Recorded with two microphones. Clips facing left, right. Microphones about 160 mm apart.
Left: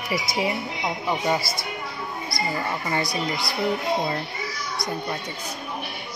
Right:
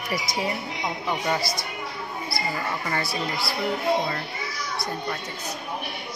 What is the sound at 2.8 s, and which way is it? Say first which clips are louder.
Speech: left 4 dB; 20° left (ahead or behind).